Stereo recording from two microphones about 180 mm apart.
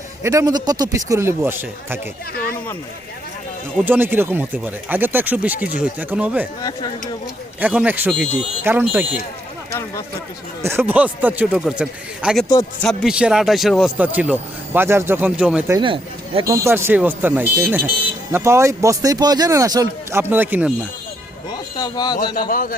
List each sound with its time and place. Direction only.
0.2 s speech: 15° right (ahead or behind)
3.8 s speech: 10° right (ahead or behind)
7.6 s speech: 10° right (ahead or behind)
8.1 s speech: centre (ahead or behind)
8.6 s speech: 10° right (ahead or behind)
10.6 s speech: 15° right (ahead or behind)
15.8 s speech: 30° right (ahead or behind)
16.4 s speech: 15° right (ahead or behind)
21.8 s speech: 20° left (ahead or behind)
22.4 s a man's voice: 50° left (ahead or behind)